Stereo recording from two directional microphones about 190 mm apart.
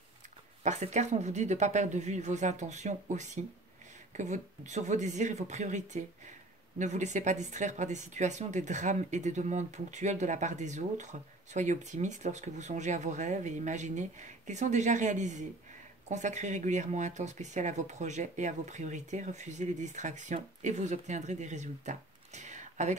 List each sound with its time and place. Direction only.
0.7 s speech: 40° right (ahead or behind)